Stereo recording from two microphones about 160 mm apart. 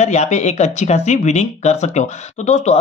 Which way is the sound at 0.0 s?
45° left (ahead or behind).